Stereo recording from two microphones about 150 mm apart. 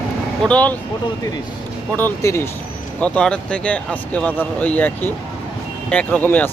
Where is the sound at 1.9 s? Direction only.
15° left (ahead or behind).